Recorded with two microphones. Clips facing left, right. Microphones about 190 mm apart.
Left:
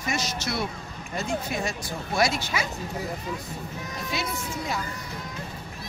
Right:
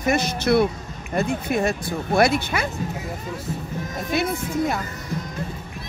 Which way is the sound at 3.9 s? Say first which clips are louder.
Right 8 dB; 50° right (ahead or behind).